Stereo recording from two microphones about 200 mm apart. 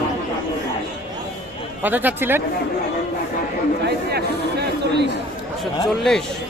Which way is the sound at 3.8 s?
55° right (ahead or behind).